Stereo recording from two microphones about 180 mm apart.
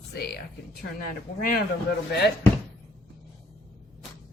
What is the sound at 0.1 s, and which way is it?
Speech, 60° left (ahead or behind).